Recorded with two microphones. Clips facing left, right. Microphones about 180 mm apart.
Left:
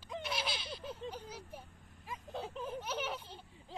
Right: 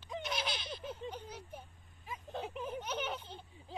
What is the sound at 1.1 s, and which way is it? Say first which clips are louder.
Vehicle: even; 10° left (ahead or behind).